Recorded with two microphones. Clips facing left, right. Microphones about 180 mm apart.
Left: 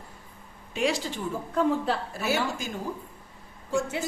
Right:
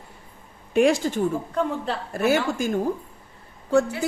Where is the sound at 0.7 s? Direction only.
50° right (ahead or behind).